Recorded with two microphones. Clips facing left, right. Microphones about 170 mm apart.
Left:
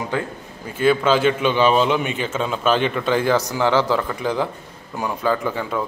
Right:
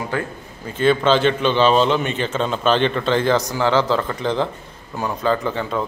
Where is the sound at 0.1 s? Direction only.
15° left (ahead or behind).